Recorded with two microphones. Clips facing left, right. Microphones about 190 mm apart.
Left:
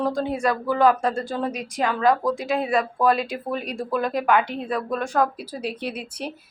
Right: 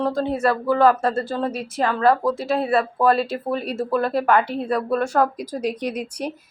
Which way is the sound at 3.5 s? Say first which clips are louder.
Right 3 dB; 35° right (ahead or behind).